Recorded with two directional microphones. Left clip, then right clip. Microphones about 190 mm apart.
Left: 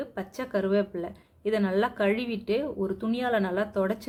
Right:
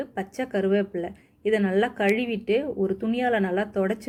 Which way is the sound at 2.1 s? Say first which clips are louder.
Right 4 dB; 35° left (ahead or behind).